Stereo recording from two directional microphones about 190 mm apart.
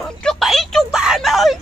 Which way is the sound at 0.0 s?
5° left (ahead or behind).